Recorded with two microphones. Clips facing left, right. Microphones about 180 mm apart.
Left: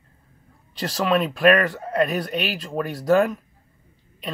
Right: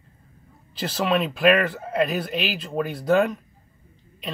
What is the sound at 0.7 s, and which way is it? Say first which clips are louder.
Speech: left 1 dB; centre (ahead or behind).